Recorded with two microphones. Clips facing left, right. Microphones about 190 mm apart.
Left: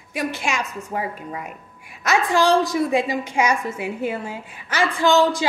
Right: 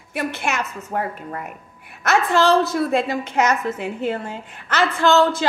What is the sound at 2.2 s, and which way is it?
A woman's voice, 15° left (ahead or behind).